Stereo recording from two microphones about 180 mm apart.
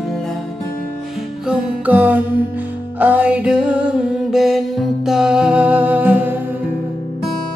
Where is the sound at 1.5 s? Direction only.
10° right (ahead or behind).